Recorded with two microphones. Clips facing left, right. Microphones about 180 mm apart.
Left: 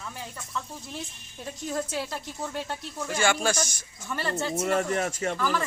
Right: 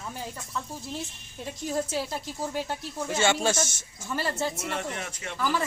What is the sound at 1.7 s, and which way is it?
A woman's voice, 10° right (ahead or behind).